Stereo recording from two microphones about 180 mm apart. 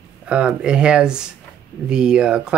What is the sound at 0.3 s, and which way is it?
Speech, 5° right (ahead or behind).